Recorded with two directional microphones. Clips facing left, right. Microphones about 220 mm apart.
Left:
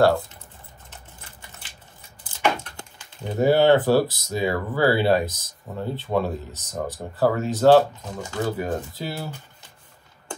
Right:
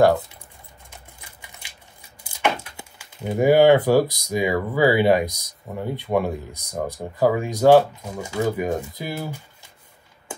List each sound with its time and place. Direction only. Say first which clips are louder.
0.0 s speech: right 2 dB; 15° right (ahead or behind)
0.8 s typing: even; 10° right (ahead or behind)
2.2 s speech: even; 10° right (ahead or behind)